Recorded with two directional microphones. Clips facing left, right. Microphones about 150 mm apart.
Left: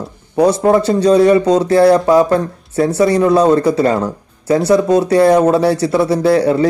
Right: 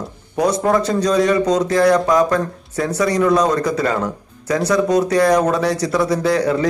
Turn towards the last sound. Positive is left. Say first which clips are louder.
# left 5 dB
turn(degrees=30)  # may be behind; listen again after turning